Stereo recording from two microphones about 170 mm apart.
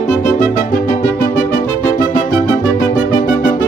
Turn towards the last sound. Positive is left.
turn(degrees=55)  # may be behind; listen again after turning